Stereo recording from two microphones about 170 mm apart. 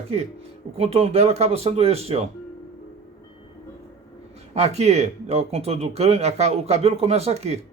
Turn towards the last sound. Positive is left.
turn(degrees=-40)  # may be behind; listen again after turning